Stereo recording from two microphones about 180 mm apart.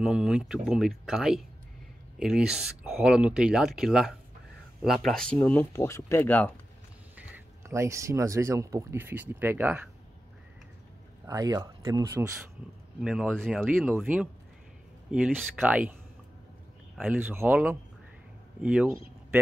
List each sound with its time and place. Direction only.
0.0 s speech: 5° right (ahead or behind)
7.2 s speech: 10° right (ahead or behind)
11.2 s speech: 20° right (ahead or behind)
13.0 s speech: 5° right (ahead or behind)